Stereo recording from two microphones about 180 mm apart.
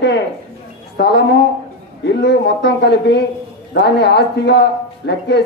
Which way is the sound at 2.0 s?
70° left (ahead or behind).